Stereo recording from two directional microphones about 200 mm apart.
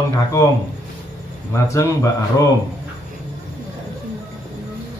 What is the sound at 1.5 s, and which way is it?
Speech, 15° left (ahead or behind).